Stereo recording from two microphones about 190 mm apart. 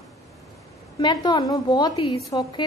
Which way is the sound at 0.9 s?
25° left (ahead or behind).